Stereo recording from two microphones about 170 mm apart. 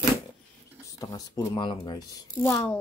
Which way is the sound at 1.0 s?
20° left (ahead or behind).